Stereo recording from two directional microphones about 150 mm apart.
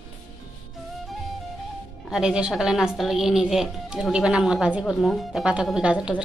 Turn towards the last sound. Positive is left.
turn(degrees=-5)  # may be behind; listen again after turning